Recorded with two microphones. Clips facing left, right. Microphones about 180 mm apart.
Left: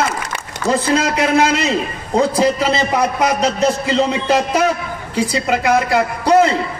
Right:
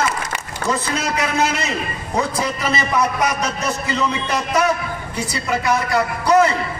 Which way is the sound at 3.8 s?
90° left.